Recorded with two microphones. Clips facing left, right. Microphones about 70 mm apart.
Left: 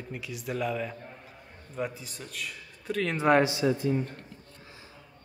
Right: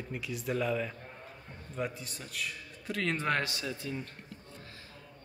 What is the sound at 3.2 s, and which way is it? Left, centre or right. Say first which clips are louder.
Speech: left 10 dB; centre.